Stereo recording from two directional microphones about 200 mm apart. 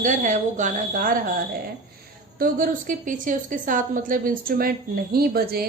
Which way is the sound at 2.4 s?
40° right (ahead or behind).